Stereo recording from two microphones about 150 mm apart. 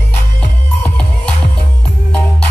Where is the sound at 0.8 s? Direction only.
5° left (ahead or behind).